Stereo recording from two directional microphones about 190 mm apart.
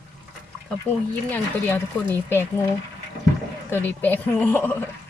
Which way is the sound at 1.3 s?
10° left (ahead or behind).